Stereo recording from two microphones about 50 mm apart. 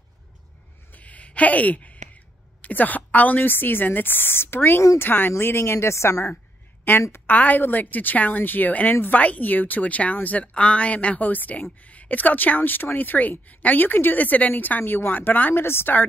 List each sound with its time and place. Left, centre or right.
0.9 s a sound: left
2.6 s a woman's voice: left
5.4 s a woman's voice: left
6.9 s a woman's voice: left
7.2 s a woman's voice: left
15.5 s a woman's voice: left